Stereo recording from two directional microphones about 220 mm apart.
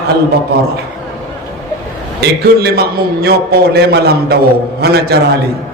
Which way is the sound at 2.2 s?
45° right (ahead or behind).